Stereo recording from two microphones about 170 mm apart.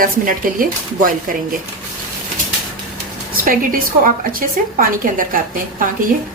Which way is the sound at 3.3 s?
55° right (ahead or behind).